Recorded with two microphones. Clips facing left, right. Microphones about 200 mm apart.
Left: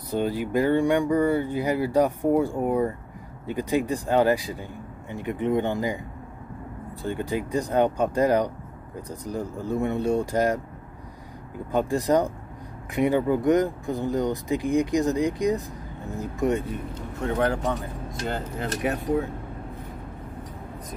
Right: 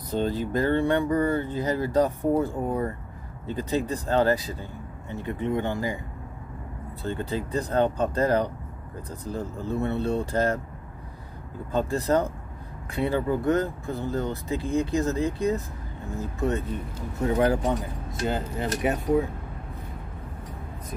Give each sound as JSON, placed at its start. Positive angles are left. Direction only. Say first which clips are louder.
{"t": 0.1, "sound": "speech", "louder": "left 1 dB", "side_deg": 10}
{"t": 7.0, "sound": "speech", "louder": "left 2 dB", "side_deg": 15}
{"t": 11.7, "sound": "speech", "louder": "left 2 dB", "side_deg": 15}
{"t": 17.2, "sound": "speech", "louder": "right 2 dB", "side_deg": -5}